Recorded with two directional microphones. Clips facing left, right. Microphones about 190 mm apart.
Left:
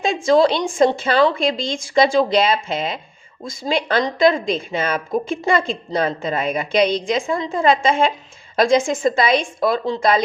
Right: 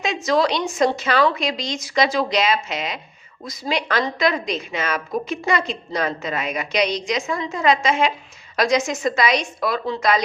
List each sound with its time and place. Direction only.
0.0 s a woman's voice: 30° left (ahead or behind)